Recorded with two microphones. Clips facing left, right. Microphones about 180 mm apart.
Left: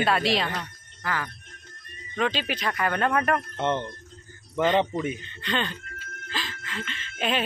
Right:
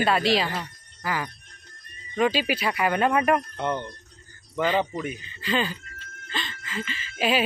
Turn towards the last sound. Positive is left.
turn(degrees=-5)  # may be behind; listen again after turning